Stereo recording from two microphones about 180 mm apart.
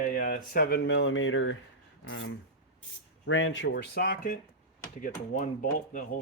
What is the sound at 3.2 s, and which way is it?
Speech, 90° left.